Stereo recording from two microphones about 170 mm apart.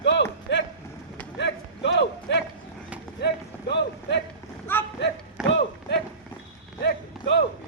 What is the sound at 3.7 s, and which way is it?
Run, 90° left.